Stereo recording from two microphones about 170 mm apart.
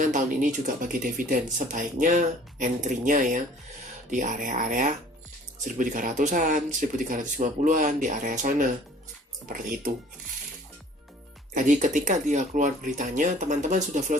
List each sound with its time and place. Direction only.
0.8 s speech: 55° right (ahead or behind)
11.5 s speech: 45° right (ahead or behind)